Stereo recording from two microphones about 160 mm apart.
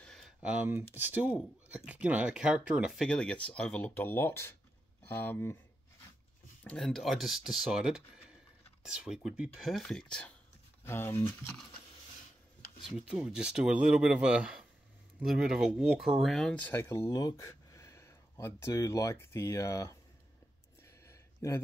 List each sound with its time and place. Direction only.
0.0 s speech: centre (ahead or behind)
6.6 s speech: 5° left (ahead or behind)
12.9 s speech: 5° right (ahead or behind); by 20.0 s 20° left (ahead or behind)
21.1 s a sound: 20° left (ahead or behind)